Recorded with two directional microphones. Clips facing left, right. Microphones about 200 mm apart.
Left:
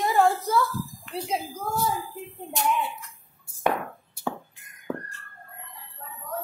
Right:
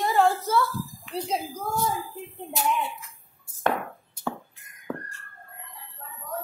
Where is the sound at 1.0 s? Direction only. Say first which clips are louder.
Right 2 dB; 5° left (ahead or behind).